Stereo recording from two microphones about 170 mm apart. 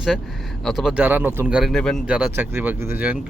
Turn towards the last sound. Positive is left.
turn(degrees=-10)  # may be behind; listen again after turning